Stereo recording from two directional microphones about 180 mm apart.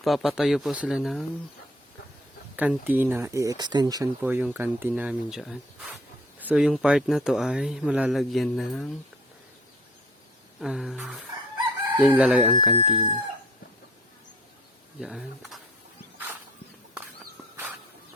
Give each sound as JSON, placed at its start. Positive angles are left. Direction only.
{"t": 0.0, "sound": "speech", "side_deg": 0}
{"t": 2.6, "sound": "speech", "side_deg": -10}
{"t": 4.2, "sound": "speech", "side_deg": -10}
{"t": 10.6, "sound": "speech", "side_deg": 0}
{"t": 12.7, "sound": "speech", "side_deg": -35}
{"t": 15.0, "sound": "speech", "side_deg": 0}